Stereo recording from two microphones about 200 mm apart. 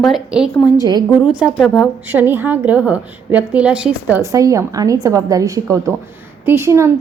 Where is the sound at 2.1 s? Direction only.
10° right (ahead or behind).